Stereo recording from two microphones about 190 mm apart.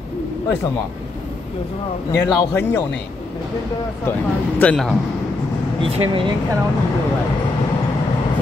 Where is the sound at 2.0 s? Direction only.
20° left (ahead or behind).